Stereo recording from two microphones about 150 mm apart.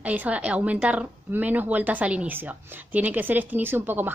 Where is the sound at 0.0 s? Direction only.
10° right (ahead or behind).